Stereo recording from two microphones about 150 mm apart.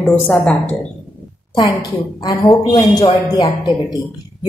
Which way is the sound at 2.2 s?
25° left (ahead or behind).